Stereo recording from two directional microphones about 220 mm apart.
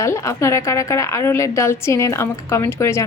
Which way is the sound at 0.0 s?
15° left (ahead or behind).